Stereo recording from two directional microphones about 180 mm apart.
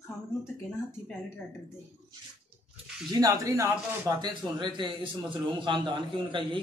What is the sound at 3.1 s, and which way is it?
A man's voice, 20° right (ahead or behind).